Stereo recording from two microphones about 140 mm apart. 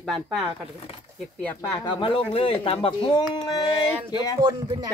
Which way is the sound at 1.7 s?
35° left (ahead or behind).